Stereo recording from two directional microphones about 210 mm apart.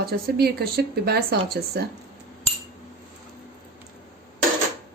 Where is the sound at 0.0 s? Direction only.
50° right (ahead or behind).